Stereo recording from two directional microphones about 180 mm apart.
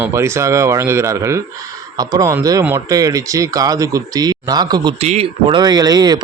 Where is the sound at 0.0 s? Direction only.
15° right (ahead or behind).